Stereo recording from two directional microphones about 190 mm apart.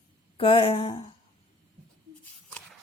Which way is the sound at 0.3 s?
30° left (ahead or behind).